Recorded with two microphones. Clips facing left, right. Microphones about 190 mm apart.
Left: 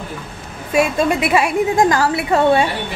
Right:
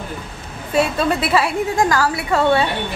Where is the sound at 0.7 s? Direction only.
15° left (ahead or behind).